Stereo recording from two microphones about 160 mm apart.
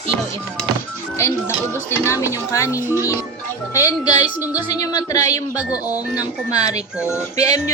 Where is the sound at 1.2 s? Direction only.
15° left (ahead or behind).